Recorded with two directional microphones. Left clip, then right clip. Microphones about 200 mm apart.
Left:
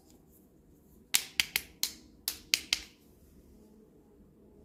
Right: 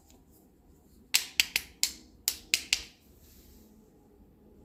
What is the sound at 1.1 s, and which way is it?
Finger snapping, 10° left (ahead or behind).